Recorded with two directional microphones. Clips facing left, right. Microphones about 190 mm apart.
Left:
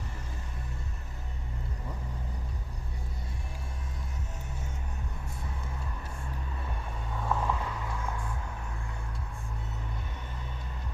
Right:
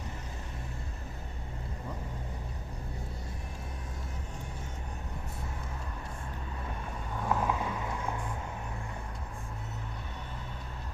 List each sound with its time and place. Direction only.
7.3 s vehicle: 15° right (ahead or behind)